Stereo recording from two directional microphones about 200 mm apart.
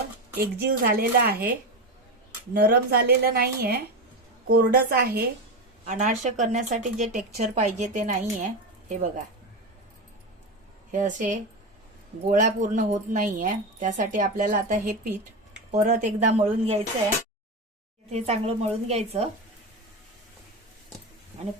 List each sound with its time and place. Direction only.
0.3 s speech: 50° right (ahead or behind)
2.5 s speech: 50° right (ahead or behind)
5.8 s speech: 35° right (ahead or behind)
10.9 s speech: 40° right (ahead or behind)
18.1 s speech: 35° right (ahead or behind)